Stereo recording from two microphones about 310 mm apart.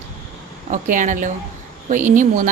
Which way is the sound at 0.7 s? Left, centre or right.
Right.